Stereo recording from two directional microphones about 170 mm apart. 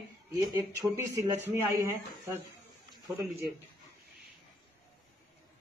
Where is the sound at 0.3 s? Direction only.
20° right (ahead or behind).